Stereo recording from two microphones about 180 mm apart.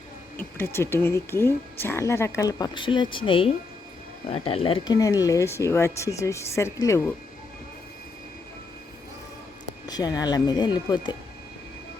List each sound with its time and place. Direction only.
0.3 s speech: 10° left (ahead or behind); by 4.9 s 30° left (ahead or behind)
4.9 s speech: 20° left (ahead or behind)
9.8 s speech: 20° left (ahead or behind)